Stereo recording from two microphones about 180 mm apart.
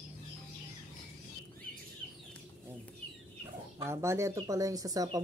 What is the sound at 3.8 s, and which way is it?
Speech, 15° right (ahead or behind).